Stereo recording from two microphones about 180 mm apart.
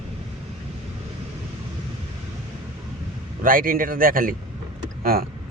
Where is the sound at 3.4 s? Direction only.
50° right (ahead or behind).